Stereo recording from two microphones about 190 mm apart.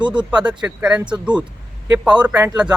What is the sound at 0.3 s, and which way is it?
Speech, 5° right (ahead or behind).